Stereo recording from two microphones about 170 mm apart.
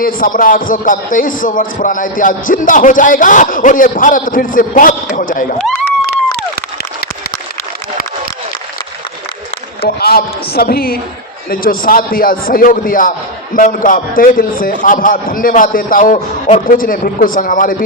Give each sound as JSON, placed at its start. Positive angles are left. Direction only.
{"t": 0.0, "sound": "a man's voice", "side_deg": 55}
{"t": 10.0, "sound": "a man's voice", "side_deg": 65}